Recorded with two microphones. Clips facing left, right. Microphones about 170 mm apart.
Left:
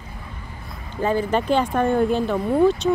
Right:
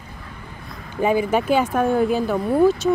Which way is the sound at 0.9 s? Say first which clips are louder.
Right 2 dB; 15° right (ahead or behind).